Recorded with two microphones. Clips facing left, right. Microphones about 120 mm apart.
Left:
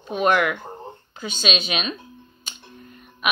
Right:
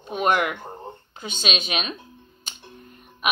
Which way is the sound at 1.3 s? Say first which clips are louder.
Left 2 dB; 50° right (ahead or behind).